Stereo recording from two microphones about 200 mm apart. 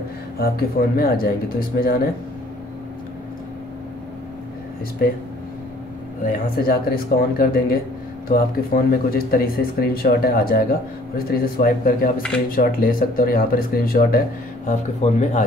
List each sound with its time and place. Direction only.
0.4 s speech: 50° left (ahead or behind)
5.0 s speech: 45° left (ahead or behind)
6.2 s speech: 45° left (ahead or behind)
14.7 s speech: 35° left (ahead or behind)